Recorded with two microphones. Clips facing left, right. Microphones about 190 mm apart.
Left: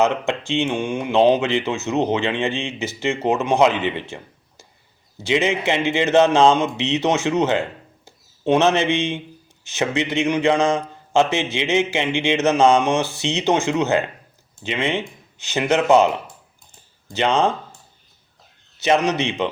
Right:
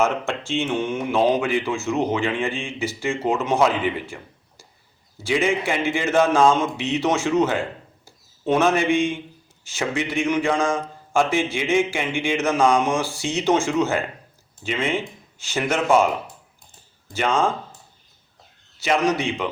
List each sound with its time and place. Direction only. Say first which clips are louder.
0.0 s a man's voice: left 3 dB; 20° left (ahead or behind)
18.8 s speech: left 2 dB; 20° left (ahead or behind)